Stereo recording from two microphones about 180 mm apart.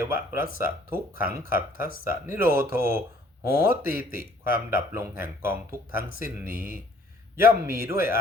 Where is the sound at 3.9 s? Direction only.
50° left (ahead or behind).